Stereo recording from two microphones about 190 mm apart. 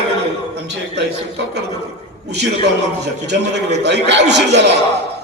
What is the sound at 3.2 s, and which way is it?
A man's voice, 65° right (ahead or behind).